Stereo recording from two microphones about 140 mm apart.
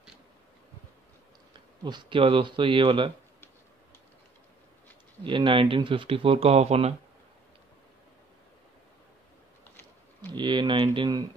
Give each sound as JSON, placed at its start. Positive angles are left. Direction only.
{"t": 1.9, "sound": "speech", "side_deg": -35}
{"t": 5.2, "sound": "speech", "side_deg": -35}
{"t": 10.3, "sound": "speech", "side_deg": -35}